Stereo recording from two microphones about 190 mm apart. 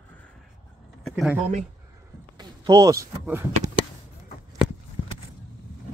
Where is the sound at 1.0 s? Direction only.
Centre (ahead or behind).